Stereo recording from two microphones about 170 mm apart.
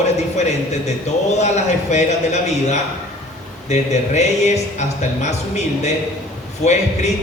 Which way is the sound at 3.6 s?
40° left (ahead or behind).